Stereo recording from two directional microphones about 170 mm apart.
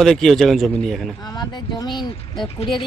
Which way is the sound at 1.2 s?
25° left (ahead or behind).